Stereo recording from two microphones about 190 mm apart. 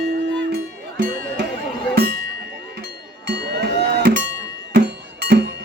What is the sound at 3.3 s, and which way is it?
Music, 60° right (ahead or behind).